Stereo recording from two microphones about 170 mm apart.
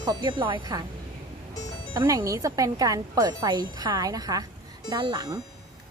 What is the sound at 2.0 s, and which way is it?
Speech, 20° right (ahead or behind).